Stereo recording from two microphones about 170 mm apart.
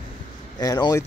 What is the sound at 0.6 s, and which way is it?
Speech, 25° left (ahead or behind).